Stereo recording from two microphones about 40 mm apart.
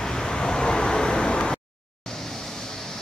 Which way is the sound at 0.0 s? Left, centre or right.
Centre.